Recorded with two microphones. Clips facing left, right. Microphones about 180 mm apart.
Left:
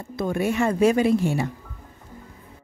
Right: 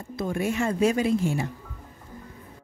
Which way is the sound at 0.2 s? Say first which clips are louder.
Left 4 dB; 60° left (ahead or behind).